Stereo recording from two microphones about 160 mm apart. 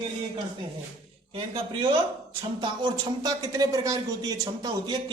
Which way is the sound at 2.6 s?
30° right (ahead or behind).